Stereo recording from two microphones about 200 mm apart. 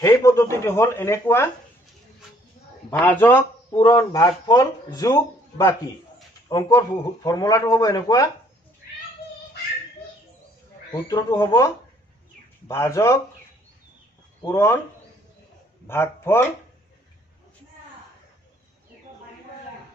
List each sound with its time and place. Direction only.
0.0 s speech: 15° left (ahead or behind)
2.9 s speech: 10° left (ahead or behind)
10.9 s speech: 20° left (ahead or behind)
14.4 s speech: 15° left (ahead or behind)
15.9 s speech: 10° left (ahead or behind)